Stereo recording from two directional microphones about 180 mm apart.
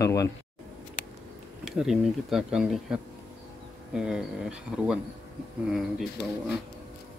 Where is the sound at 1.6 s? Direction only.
Centre (ahead or behind).